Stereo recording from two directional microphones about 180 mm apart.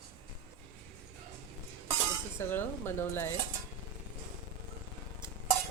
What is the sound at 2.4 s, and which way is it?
Speech, 10° left (ahead or behind).